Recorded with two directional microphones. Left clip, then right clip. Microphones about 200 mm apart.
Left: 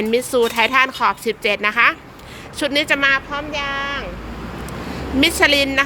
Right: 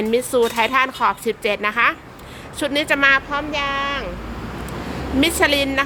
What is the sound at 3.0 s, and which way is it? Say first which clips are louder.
Speech: right 1 dB; 15° right (ahead or behind).